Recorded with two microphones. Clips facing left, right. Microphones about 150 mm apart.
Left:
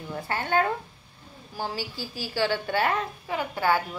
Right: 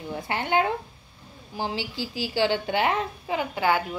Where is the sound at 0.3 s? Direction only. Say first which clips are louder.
Right 1 dB; 20° right (ahead or behind).